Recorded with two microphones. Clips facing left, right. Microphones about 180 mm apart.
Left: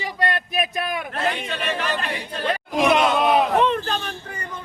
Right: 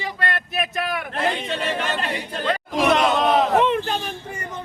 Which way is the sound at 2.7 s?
Centre (ahead or behind).